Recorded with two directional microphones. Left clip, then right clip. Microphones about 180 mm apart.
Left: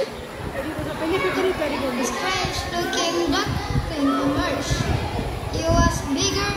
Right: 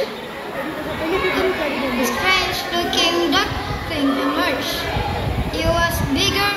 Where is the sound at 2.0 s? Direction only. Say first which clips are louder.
Right 6 dB; 15° right (ahead or behind).